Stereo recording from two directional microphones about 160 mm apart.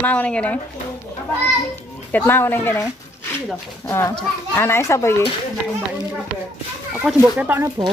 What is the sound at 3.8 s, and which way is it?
Speech, 15° left (ahead or behind).